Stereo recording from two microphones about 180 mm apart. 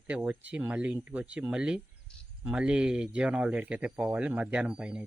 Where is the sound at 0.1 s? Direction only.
10° right (ahead or behind).